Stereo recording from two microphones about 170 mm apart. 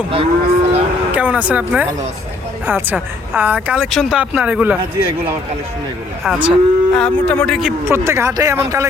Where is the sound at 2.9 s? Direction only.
10° right (ahead or behind).